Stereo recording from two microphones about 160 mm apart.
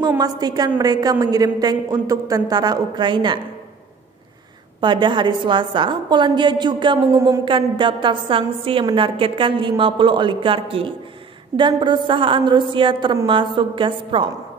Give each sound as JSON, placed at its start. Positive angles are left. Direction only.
{"t": 0.2, "sound": "a woman's voice", "side_deg": -25}
{"t": 4.7, "sound": "a woman's voice", "side_deg": -30}